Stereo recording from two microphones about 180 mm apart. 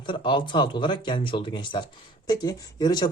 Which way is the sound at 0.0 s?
25° left (ahead or behind).